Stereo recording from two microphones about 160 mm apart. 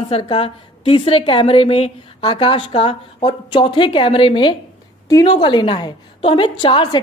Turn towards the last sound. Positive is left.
turn(degrees=30)  # may be behind; listen again after turning